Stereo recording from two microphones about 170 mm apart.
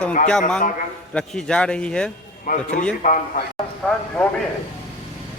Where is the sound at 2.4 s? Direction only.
50° left (ahead or behind).